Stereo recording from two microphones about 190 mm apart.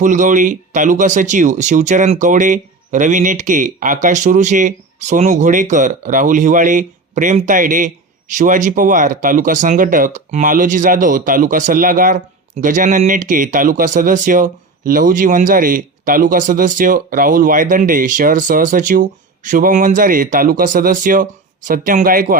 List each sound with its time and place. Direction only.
0.0 s speech: 40° right (ahead or behind)